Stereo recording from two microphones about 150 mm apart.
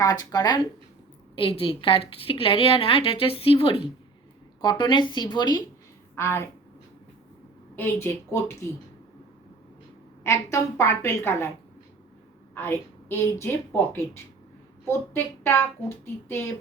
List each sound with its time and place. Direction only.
0.0 s a woman's voice: 25° left (ahead or behind)
6.1 s speech: 15° left (ahead or behind)
7.8 s speech: 15° left (ahead or behind)
10.2 s speech: 20° left (ahead or behind)
12.5 s speech: 15° left (ahead or behind)